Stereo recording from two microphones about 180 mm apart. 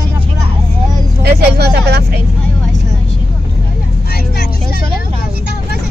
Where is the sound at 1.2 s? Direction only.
60° right (ahead or behind).